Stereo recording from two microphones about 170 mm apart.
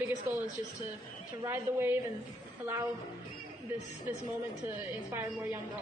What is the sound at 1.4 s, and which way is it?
A woman's voice, 15° right (ahead or behind).